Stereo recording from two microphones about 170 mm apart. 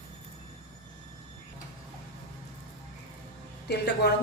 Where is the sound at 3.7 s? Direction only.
75° left (ahead or behind).